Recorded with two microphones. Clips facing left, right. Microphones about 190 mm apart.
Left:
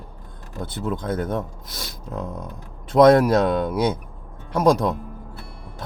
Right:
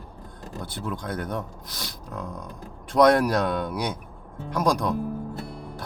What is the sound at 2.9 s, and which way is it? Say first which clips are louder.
Speech: left 5 dB; 25° left (ahead or behind).